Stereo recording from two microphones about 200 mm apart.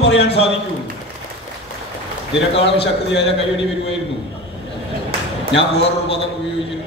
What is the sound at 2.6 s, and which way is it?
Speech, 60° left (ahead or behind).